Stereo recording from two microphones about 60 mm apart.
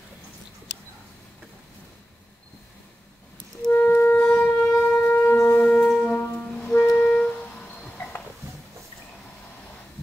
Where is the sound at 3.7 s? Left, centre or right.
Left.